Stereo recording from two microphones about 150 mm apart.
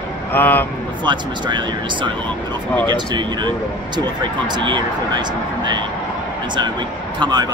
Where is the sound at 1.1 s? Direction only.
30° right (ahead or behind).